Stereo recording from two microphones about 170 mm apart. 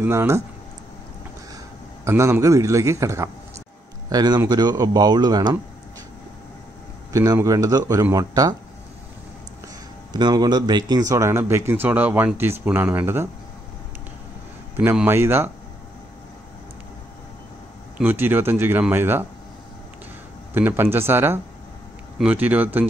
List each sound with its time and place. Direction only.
0.0 s speech: 15° right (ahead or behind)
2.0 s speech: 15° right (ahead or behind)
7.1 s speech: 20° right (ahead or behind)
10.1 s speech: 25° right (ahead or behind)
14.8 s speech: 10° right (ahead or behind)
17.9 s speech: 10° right (ahead or behind)
20.5 s speech: 10° right (ahead or behind)